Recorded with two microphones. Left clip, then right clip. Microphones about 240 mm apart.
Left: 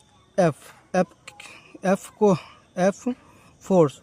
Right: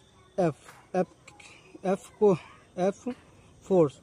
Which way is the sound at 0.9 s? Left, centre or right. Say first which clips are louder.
Left 6 dB; left.